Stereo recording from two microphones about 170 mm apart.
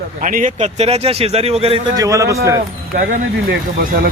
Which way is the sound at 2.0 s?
20° right (ahead or behind).